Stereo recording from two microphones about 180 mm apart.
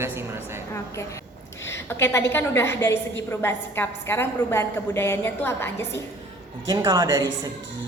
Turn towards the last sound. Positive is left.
turn(degrees=-20)  # may be behind; listen again after turning